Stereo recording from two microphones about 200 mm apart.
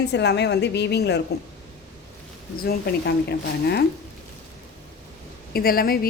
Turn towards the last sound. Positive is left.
turn(degrees=50)  # may be behind; listen again after turning